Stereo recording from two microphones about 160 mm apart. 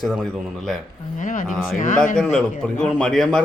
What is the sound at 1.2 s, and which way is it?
Speech, 55° left (ahead or behind).